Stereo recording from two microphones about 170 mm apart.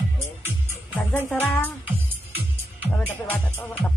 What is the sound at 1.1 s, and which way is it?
Speech, 10° left (ahead or behind).